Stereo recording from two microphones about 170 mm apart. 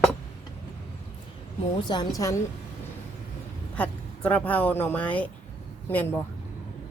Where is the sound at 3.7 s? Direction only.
10° left (ahead or behind).